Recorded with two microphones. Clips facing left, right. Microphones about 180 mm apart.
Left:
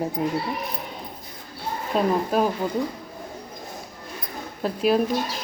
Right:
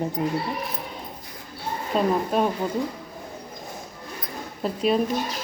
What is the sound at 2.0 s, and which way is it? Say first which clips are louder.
Speech: left 1 dB; 5° left (ahead or behind).